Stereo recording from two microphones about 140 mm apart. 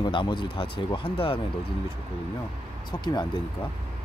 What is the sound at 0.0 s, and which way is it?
Speech, 35° left (ahead or behind).